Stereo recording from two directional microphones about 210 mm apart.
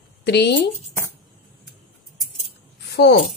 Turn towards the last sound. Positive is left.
turn(degrees=50)  # may be behind; listen again after turning